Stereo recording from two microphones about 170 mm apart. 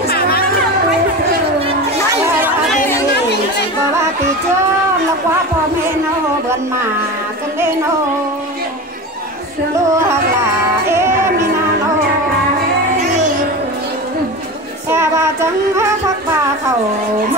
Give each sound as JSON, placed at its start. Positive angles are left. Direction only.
{"t": 0.1, "sound": "music", "side_deg": 65}
{"t": 9.8, "sound": "music", "side_deg": -20}
{"t": 14.9, "sound": "music", "side_deg": -15}